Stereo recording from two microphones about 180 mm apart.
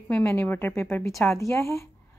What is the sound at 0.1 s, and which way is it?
Speech, 15° left (ahead or behind).